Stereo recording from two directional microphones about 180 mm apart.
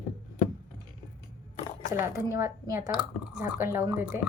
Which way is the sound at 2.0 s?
15° right (ahead or behind).